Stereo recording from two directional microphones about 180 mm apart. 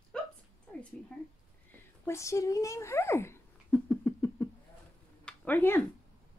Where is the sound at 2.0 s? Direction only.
15° left (ahead or behind).